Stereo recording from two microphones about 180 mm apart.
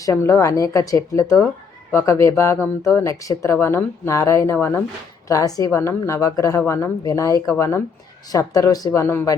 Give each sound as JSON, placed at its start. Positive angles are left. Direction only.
{"t": 0.0, "sound": "a woman's voice", "side_deg": 15}